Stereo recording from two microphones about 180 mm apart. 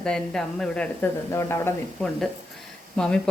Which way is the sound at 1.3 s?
15° left (ahead or behind).